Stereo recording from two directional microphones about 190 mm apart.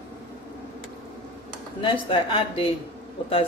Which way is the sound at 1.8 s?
30° left (ahead or behind).